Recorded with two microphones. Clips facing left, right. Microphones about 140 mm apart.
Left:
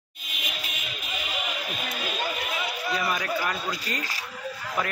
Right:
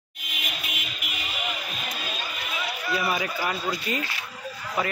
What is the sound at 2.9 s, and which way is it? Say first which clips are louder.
A man's voice: right 1 dB; 5° right (ahead or behind).